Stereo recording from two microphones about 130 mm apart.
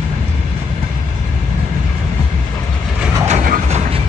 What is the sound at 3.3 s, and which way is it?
Train, 75° right (ahead or behind).